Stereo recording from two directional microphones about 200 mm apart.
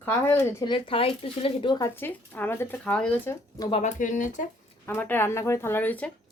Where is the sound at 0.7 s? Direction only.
25° left (ahead or behind).